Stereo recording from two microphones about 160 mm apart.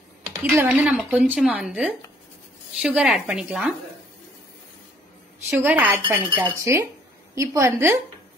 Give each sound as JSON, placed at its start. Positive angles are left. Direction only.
{"t": 0.6, "sound": "a woman's voice", "side_deg": -10}
{"t": 5.6, "sound": "speech", "side_deg": -10}
{"t": 6.1, "sound": "dishes", "side_deg": -20}
{"t": 7.3, "sound": "speech", "side_deg": -20}